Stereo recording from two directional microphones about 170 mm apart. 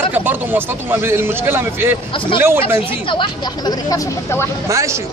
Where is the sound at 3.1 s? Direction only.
25° left (ahead or behind).